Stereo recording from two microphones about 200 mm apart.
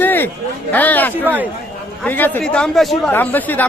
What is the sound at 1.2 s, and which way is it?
Speech, 10° right (ahead or behind).